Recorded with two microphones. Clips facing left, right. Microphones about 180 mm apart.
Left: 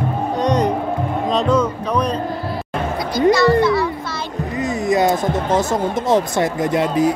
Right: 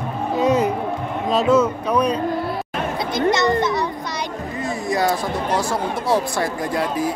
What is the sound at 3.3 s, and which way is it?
Speech, 20° right (ahead or behind).